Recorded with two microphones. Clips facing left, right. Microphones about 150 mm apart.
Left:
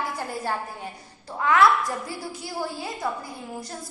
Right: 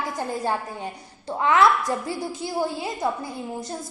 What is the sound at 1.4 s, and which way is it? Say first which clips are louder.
Speech: right 2 dB; 25° right (ahead or behind).